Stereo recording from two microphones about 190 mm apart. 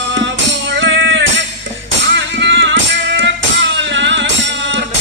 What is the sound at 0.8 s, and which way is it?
Music, 75° right (ahead or behind).